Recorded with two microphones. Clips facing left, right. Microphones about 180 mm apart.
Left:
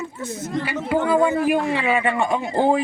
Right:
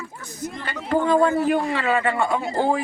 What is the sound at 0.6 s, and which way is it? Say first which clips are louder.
A man's voice: even; 10° left (ahead or behind).